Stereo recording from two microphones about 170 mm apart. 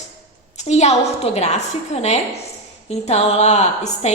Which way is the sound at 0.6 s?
40° left (ahead or behind).